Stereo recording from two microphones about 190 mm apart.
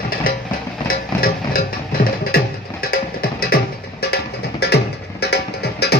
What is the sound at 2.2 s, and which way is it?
Music, 50° left (ahead or behind).